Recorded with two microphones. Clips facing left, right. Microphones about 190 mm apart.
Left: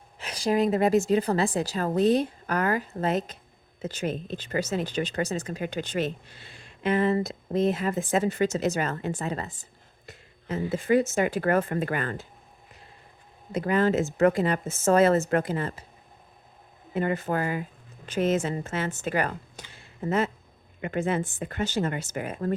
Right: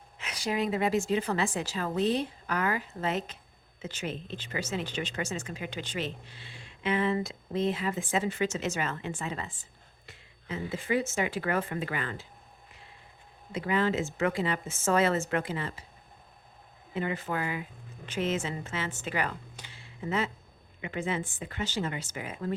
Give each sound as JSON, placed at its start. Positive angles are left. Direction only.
{"t": 0.2, "sound": "a woman's voice", "side_deg": 35}
{"t": 13.5, "sound": "a woman's voice", "side_deg": 45}
{"t": 16.9, "sound": "a woman's voice", "side_deg": 45}